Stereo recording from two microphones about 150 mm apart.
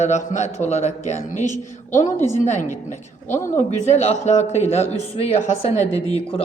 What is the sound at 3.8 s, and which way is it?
Speech, 45° left (ahead or behind).